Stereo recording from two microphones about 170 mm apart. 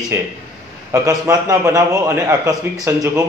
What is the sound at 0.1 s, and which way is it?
A man's voice, 15° right (ahead or behind).